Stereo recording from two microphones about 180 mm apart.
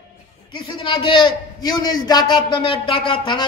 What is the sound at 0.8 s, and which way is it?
A man's voice, 30° left (ahead or behind).